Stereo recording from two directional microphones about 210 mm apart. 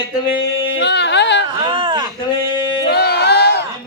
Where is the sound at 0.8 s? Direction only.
55° left (ahead or behind).